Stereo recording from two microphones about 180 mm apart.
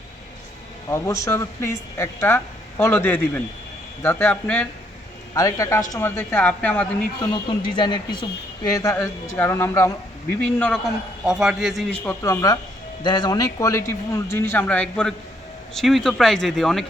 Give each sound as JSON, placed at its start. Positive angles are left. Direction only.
{"t": 0.9, "sound": "speech", "side_deg": 15}
{"t": 5.3, "sound": "speech", "side_deg": 20}
{"t": 7.3, "sound": "speech", "side_deg": 25}
{"t": 10.6, "sound": "a man's voice", "side_deg": 0}
{"t": 12.2, "sound": "a man's voice", "side_deg": 20}